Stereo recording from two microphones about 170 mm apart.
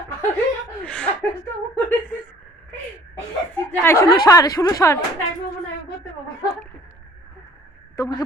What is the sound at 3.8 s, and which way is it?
A woman's voice, 15° left (ahead or behind).